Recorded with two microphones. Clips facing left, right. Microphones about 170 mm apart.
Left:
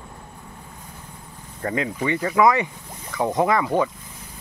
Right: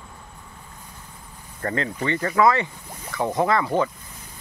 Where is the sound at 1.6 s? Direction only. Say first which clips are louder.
Left 1 dB; 10° left (ahead or behind).